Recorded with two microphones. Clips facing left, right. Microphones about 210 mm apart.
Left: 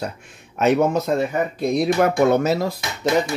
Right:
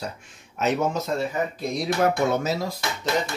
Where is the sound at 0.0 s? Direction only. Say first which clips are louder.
Left 5 dB; 60° left (ahead or behind).